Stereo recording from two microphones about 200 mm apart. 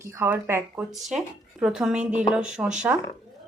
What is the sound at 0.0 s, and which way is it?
Speech, 15° right (ahead or behind).